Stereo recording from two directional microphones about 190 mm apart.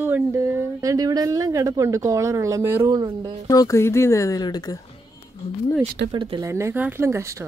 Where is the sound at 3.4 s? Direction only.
15° left (ahead or behind).